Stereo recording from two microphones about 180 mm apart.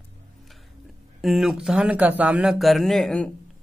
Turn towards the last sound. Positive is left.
turn(degrees=5)  # may be behind; listen again after turning